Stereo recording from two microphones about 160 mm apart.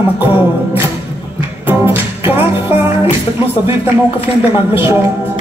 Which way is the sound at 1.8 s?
15° right (ahead or behind).